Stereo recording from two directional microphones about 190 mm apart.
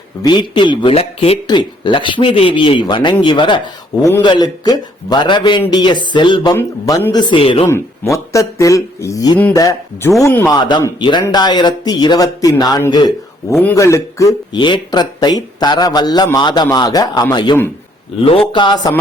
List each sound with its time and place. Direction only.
0.2 s speech: 25° left (ahead or behind)
7.7 s speech: 15° left (ahead or behind)